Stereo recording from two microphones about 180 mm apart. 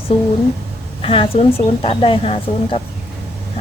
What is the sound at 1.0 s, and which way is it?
Speech, 30° left (ahead or behind).